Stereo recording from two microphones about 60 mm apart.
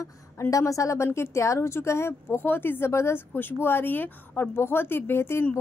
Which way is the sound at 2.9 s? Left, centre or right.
Left.